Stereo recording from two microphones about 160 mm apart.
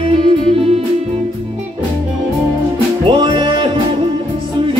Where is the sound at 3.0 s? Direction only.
30° right (ahead or behind).